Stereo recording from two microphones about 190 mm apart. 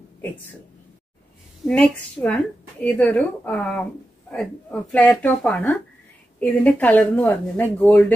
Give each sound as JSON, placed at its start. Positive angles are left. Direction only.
{"t": 1.7, "sound": "speech", "side_deg": 5}